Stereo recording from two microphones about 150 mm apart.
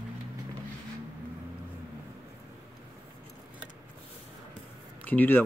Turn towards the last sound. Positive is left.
turn(degrees=15)  # may be behind; listen again after turning